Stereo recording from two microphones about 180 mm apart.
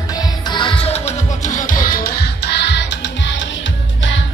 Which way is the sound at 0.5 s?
25° left (ahead or behind).